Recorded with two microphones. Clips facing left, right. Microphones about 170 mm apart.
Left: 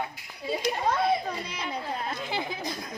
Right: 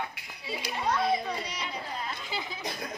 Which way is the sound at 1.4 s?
55° left (ahead or behind).